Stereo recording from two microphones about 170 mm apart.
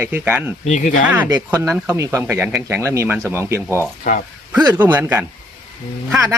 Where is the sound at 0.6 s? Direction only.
45° left (ahead or behind).